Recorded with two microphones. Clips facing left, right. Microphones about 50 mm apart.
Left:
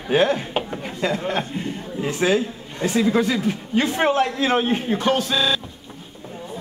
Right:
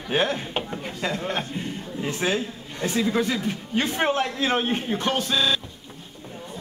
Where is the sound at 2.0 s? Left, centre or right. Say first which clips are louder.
Left 6 dB; left; by 5.6 s centre.